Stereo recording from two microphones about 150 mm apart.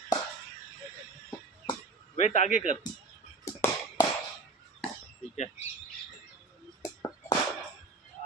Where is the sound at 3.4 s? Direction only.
20° left (ahead or behind).